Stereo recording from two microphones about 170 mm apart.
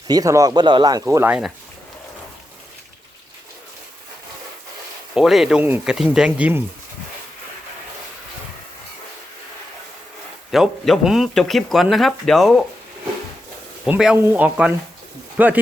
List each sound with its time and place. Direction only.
0.1 s speech: 20° right (ahead or behind)
5.1 s speech: centre (ahead or behind)
10.5 s speech: centre (ahead or behind)
13.8 s speech: 5° right (ahead or behind)